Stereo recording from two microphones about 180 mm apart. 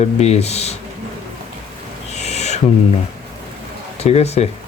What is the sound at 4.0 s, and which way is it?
Speech, 35° left (ahead or behind).